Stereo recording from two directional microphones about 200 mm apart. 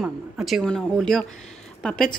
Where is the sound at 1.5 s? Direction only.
5° left (ahead or behind).